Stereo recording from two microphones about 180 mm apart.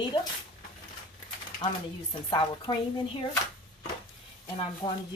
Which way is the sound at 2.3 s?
25° left (ahead or behind).